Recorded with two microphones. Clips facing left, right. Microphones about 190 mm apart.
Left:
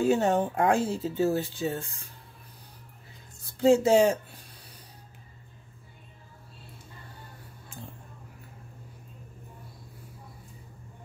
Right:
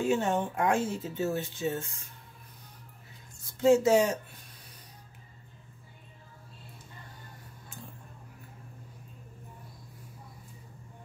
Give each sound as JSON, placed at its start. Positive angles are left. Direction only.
{"t": 0.0, "sound": "speech", "side_deg": 35}
{"t": 3.5, "sound": "speech", "side_deg": 30}